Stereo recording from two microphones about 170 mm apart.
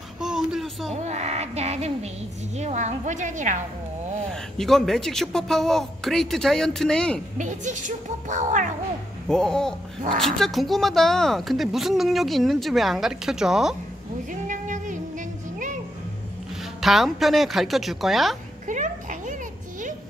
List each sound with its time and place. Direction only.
0.2 s speech: 5° right (ahead or behind)
0.9 s a sound: 40° right (ahead or behind)
2.5 s a child's voice: 40° right (ahead or behind)
4.3 s speech: 5° left (ahead or behind)
7.3 s a child's voice: 45° right (ahead or behind)
9.3 s speech: 5° left (ahead or behind)
14.5 s music: 50° right (ahead or behind)
16.8 s speech: centre (ahead or behind)
18.7 s a sound: 45° right (ahead or behind)